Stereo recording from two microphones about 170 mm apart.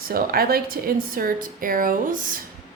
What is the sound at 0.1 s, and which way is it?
A woman's voice, 60° right (ahead or behind).